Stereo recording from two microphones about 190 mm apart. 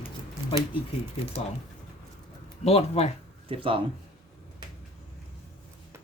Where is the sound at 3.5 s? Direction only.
30° right (ahead or behind).